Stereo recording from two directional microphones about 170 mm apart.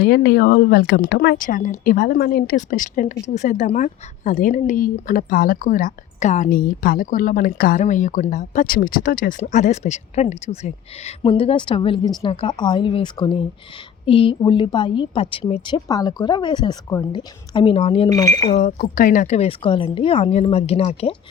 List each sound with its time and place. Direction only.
0.0 s speech: 80° left
1.5 s a woman's voice: 50° left (ahead or behind); by 15.7 s 35° left (ahead or behind)
15.7 s speech: 20° left (ahead or behind)
18.1 s speech: 20° left (ahead or behind)
18.5 s a woman's voice: 55° left (ahead or behind)
19.4 s speech: 35° left (ahead or behind)